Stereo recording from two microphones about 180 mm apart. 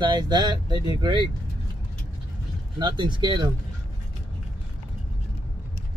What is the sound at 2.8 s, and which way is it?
Speech, 25° right (ahead or behind).